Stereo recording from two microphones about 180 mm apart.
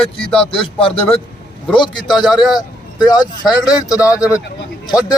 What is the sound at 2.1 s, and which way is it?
Speech, centre (ahead or behind).